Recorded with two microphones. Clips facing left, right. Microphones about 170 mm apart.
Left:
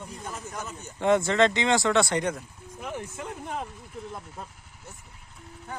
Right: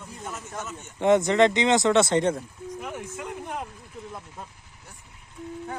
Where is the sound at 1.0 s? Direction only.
20° right (ahead or behind).